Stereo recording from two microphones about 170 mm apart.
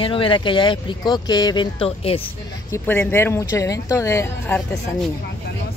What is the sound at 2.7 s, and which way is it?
Speech, 10° left (ahead or behind).